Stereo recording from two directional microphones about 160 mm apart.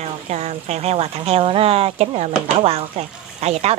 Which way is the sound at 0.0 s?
45° right (ahead or behind).